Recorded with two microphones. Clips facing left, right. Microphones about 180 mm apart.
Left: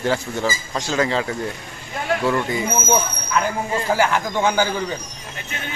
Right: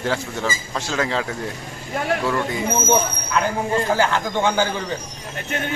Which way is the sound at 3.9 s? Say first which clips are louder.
Even; 10° left (ahead or behind).